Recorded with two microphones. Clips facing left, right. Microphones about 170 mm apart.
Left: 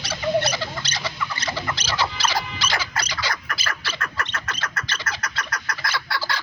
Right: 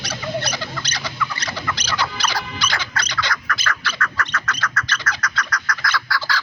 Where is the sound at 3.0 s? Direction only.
5° left (ahead or behind).